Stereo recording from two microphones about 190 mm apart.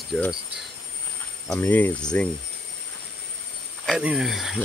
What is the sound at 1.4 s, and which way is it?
Speech, 10° left (ahead or behind).